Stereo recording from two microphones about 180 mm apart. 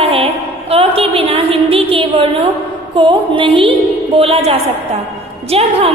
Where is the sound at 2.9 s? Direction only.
25° right (ahead or behind).